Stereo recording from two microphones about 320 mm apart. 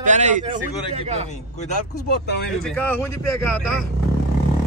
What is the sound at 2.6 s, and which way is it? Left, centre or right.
Speech, centre.